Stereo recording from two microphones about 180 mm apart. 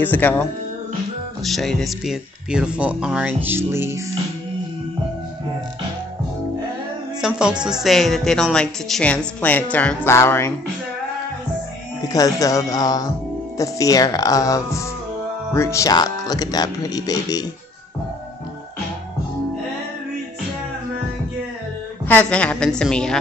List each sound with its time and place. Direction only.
0.0 s a woman's voice: 10° left (ahead or behind); by 4.0 s 15° right (ahead or behind)
7.2 s a woman's voice: 5° right (ahead or behind); by 10.5 s 15° left (ahead or behind)
12.1 s speech: 20° left (ahead or behind)
22.0 s a woman's voice: 10° left (ahead or behind)